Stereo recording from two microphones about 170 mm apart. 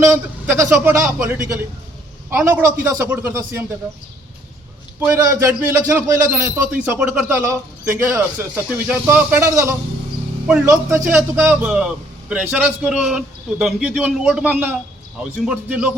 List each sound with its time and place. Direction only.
0.4 s a man's voice: 15° right (ahead or behind)
4.9 s a man's voice: 15° right (ahead or behind)